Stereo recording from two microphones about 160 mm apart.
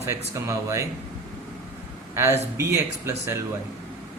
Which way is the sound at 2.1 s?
15° right (ahead or behind).